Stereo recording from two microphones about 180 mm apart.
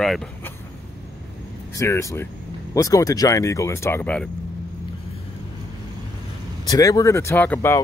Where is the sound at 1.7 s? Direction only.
15° left (ahead or behind).